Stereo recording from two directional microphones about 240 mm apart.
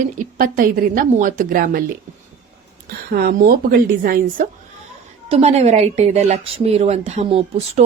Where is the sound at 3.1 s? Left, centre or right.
Right.